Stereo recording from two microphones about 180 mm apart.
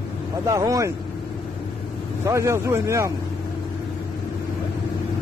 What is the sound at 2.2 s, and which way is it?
Speech, 15° right (ahead or behind).